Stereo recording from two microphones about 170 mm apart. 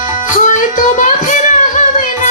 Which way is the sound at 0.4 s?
45° left (ahead or behind).